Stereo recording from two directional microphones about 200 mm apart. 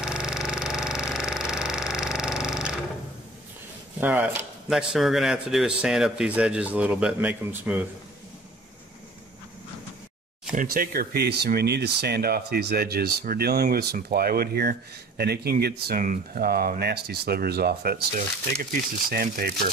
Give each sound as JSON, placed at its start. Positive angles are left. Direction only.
{"t": 0.0, "sound": "a sound", "side_deg": -5}
{"t": 4.0, "sound": "speech", "side_deg": -10}
{"t": 10.5, "sound": "speech", "side_deg": -45}